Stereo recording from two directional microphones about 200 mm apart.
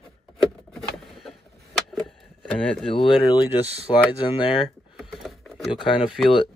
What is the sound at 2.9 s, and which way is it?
Speech, 20° left (ahead or behind).